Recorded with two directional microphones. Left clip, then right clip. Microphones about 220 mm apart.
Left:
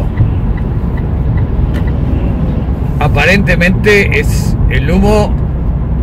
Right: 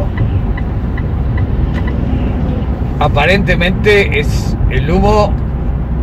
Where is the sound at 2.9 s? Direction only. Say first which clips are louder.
Left 1 dB; 10° left (ahead or behind).